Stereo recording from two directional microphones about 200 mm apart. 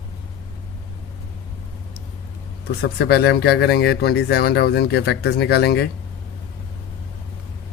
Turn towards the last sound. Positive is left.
turn(degrees=55)  # may be behind; listen again after turning